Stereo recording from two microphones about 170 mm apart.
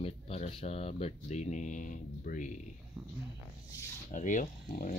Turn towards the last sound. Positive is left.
turn(degrees=50)  # may be behind; listen again after turning